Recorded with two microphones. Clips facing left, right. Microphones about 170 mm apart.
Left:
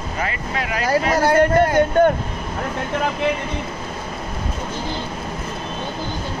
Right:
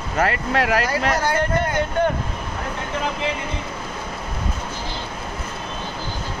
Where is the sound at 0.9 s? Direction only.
45° left (ahead or behind).